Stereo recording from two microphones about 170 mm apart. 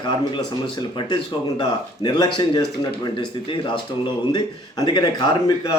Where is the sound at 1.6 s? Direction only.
25° left (ahead or behind).